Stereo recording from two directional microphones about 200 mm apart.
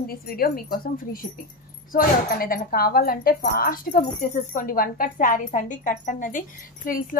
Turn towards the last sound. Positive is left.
turn(degrees=45)  # may be behind; listen again after turning